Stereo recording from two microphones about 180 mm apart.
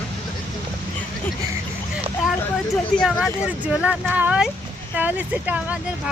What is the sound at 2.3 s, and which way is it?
Speech, centre (ahead or behind).